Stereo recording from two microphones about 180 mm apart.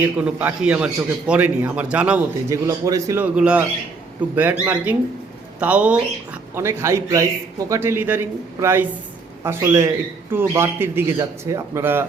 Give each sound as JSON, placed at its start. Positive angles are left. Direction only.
{"t": 0.0, "sound": "speech", "side_deg": -5}
{"t": 2.6, "sound": "a man's voice", "side_deg": -20}
{"t": 3.3, "sound": "speech", "side_deg": -5}